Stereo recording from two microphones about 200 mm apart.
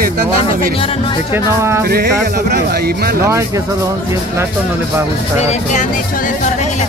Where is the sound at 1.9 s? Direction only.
55° right (ahead or behind).